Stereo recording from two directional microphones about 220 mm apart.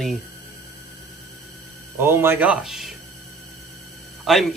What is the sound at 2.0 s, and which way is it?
Speech, 10° right (ahead or behind).